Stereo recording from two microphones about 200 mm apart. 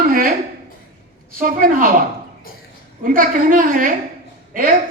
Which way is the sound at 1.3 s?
45° right (ahead or behind).